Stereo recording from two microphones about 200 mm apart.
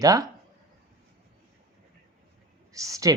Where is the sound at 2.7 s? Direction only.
15° right (ahead or behind).